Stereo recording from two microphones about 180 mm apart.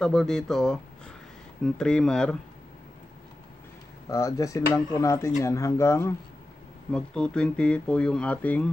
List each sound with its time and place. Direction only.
0.0 s speech: centre (ahead or behind)
4.1 s speech: 20° left (ahead or behind)
6.9 s speech: 5° left (ahead or behind)